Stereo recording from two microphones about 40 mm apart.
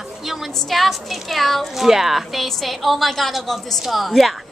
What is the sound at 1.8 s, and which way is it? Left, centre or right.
A woman's voice, centre.